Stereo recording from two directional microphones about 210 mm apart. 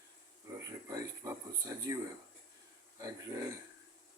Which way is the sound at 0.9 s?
15° right (ahead or behind).